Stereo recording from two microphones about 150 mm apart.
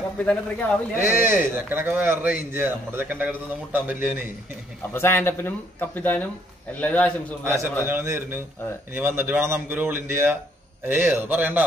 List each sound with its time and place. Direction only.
0.2 s speech: 10° left (ahead or behind)
1.0 s a man's voice: 15° right (ahead or behind)
4.9 s speech: 15° left (ahead or behind)
7.4 s a man's voice: 15° right (ahead or behind)